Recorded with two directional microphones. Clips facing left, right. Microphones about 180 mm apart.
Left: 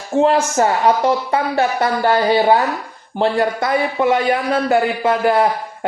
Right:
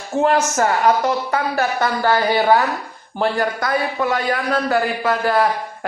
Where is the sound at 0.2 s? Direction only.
25° left (ahead or behind).